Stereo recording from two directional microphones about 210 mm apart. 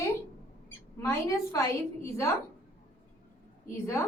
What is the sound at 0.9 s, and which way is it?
A woman's voice, 15° left (ahead or behind).